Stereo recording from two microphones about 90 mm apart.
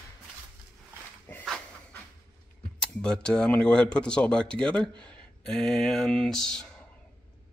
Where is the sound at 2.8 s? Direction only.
10° left (ahead or behind).